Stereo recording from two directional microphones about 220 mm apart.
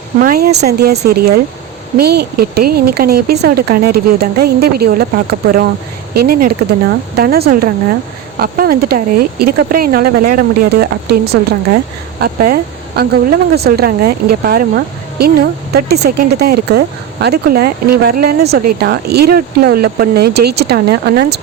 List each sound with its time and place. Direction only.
0.2 s speech: 45° right (ahead or behind)